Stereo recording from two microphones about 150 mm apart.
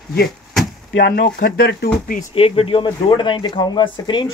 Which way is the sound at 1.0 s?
85° left.